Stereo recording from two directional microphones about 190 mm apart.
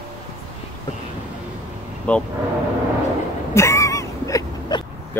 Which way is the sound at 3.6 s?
15° left (ahead or behind).